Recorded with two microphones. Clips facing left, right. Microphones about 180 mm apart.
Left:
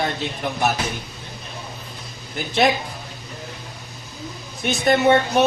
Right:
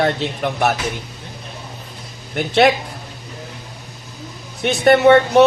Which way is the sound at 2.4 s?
70° right (ahead or behind).